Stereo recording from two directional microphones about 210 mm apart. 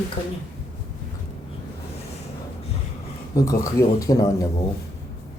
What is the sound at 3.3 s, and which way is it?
Speech, 15° left (ahead or behind).